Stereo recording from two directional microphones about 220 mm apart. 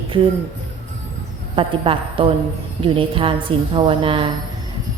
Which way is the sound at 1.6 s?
25° right (ahead or behind).